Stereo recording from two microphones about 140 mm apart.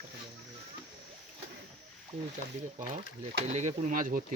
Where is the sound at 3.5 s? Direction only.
55° right (ahead or behind); by 4.2 s 75° right (ahead or behind).